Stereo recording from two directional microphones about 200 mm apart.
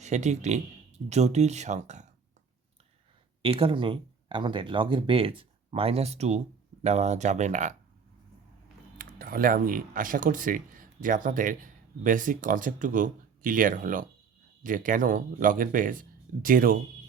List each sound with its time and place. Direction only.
0.0 s speech: 35° right (ahead or behind)
3.4 s speech: 25° right (ahead or behind)
9.0 s speech: 45° right (ahead or behind)